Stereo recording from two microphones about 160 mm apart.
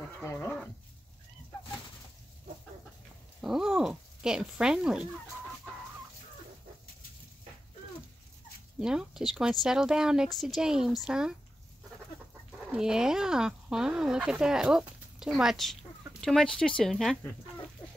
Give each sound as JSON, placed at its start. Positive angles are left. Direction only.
{"t": 0.2, "sound": "speech", "side_deg": 15}
{"t": 3.3, "sound": "speech", "side_deg": -5}
{"t": 8.7, "sound": "speech", "side_deg": -5}
{"t": 12.7, "sound": "speech", "side_deg": -5}